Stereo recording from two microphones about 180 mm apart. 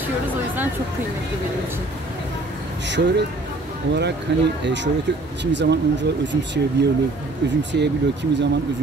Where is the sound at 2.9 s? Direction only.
75° right (ahead or behind).